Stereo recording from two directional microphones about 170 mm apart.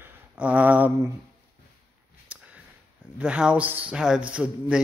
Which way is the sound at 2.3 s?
10° right (ahead or behind).